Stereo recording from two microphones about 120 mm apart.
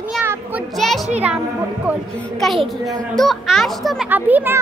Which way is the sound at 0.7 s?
Centre (ahead or behind).